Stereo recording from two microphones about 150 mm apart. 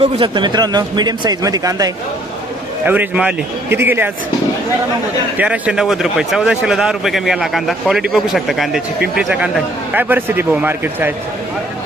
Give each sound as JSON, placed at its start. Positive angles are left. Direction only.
{"t": 0.0, "sound": "a man's voice", "side_deg": -35}
{"t": 2.8, "sound": "a man's voice", "side_deg": -10}
{"t": 5.4, "sound": "a man's voice", "side_deg": -10}